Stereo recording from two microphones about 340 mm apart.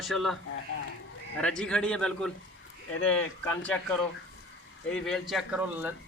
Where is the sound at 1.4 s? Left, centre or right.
Centre.